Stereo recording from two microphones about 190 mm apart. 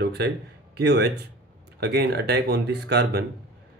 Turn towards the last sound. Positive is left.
turn(degrees=-60)  # may be behind; listen again after turning